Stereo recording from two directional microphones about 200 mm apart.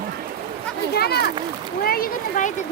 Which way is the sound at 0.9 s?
50° left (ahead or behind).